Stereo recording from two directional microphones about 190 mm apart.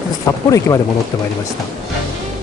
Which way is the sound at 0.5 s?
15° left (ahead or behind).